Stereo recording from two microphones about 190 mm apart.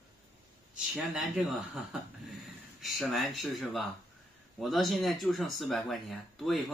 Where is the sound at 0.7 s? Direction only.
Centre (ahead or behind).